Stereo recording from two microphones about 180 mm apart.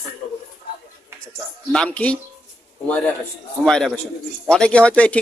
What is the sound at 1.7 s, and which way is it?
Speech, 5° left (ahead or behind).